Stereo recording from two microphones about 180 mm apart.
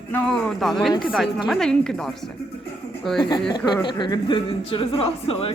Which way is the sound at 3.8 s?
25° left (ahead or behind).